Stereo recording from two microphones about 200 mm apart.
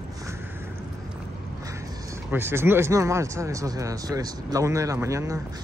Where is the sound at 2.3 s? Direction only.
10° right (ahead or behind).